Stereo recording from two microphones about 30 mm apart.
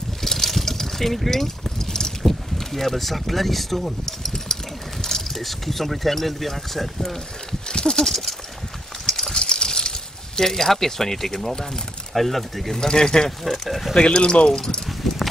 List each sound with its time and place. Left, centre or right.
0.2 s vehicle: centre
1.8 s boat: centre
2.2 s speech: centre
7.6 s horse: left
9.0 s a sound: centre
9.3 s a sound: left
10.4 s speech: centre
12.7 s speech: left
13.4 s speech: centre
13.9 s speech: left
15.0 s clip-clop: centre